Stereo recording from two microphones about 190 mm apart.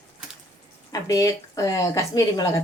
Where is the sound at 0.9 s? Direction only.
20° left (ahead or behind).